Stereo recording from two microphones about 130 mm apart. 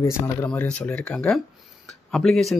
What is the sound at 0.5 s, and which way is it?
Speech, 10° left (ahead or behind).